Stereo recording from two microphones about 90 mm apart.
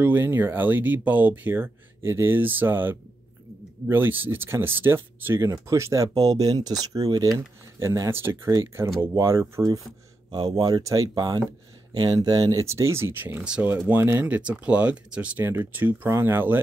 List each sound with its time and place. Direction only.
0.0 s speech: 20° right (ahead or behind)
10.3 s speech: 50° right (ahead or behind)
12.6 s speech: 30° right (ahead or behind)
13.4 s speech: 15° right (ahead or behind)
13.8 s speech: 25° right (ahead or behind)
15.4 s speech: 30° right (ahead or behind)